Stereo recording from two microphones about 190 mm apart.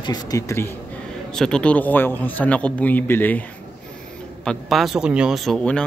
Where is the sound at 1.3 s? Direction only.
5° left (ahead or behind).